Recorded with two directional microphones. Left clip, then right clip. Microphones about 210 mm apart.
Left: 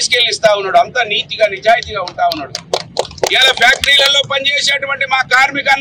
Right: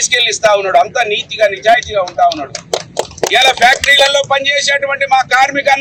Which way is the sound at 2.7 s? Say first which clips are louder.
Left 1 dB; 30° right (ahead or behind).